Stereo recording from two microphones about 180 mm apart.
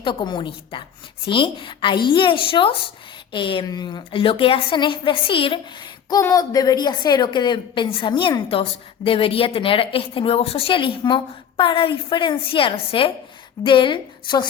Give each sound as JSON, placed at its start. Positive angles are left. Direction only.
{"t": 0.0, "sound": "a woman's voice", "side_deg": 25}